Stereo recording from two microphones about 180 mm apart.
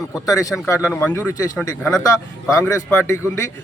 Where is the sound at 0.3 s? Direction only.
20° left (ahead or behind).